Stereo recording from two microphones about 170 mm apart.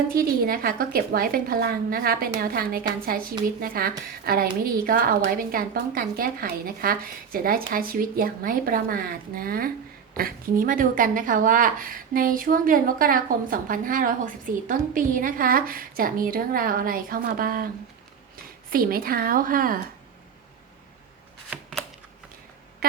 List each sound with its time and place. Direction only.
0.1 s speech: 60° right (ahead or behind)
18.7 s speech: 60° right (ahead or behind)
21.5 s shuffling cards: centre (ahead or behind)
22.8 s a sound: 60° right (ahead or behind)